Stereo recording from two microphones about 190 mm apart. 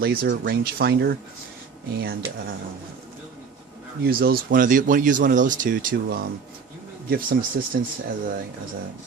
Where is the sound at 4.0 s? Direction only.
55° right (ahead or behind).